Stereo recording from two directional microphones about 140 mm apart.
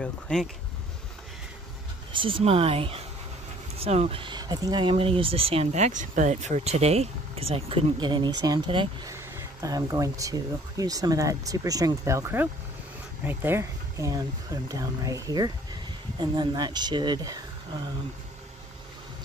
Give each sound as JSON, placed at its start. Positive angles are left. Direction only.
{"t": 0.0, "sound": "speech", "side_deg": 5}
{"t": 2.1, "sound": "speech", "side_deg": -40}
{"t": 9.1, "sound": "speech", "side_deg": -20}